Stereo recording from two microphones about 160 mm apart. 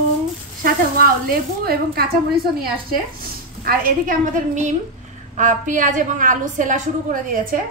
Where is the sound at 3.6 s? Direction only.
60° right (ahead or behind).